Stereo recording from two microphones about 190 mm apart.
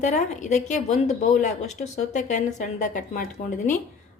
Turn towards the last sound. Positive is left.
turn(degrees=45)  # may be behind; listen again after turning